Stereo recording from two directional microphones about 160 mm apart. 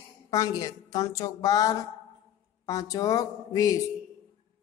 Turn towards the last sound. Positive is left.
turn(degrees=20)  # may be behind; listen again after turning